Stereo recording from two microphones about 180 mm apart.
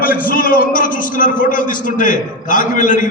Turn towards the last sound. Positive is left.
turn(degrees=45)  # may be behind; listen again after turning